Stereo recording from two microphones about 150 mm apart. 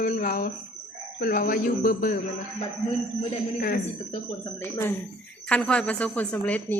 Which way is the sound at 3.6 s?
75° left (ahead or behind).